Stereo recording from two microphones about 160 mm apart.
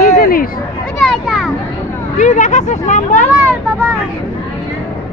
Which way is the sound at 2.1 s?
50° left (ahead or behind).